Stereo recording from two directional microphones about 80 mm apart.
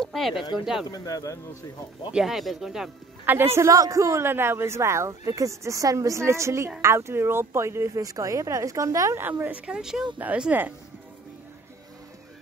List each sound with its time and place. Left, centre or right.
0.0 s a sound: centre
0.8 s speech: left
2.1 s speech: centre
3.3 s a man's voice: right
9.4 s speech: centre
10.1 s speech: centre